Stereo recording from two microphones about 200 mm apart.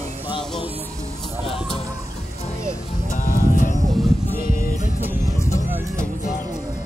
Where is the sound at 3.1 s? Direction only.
45° left (ahead or behind).